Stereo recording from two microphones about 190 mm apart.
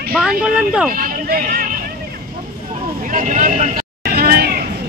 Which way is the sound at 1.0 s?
50° right (ahead or behind).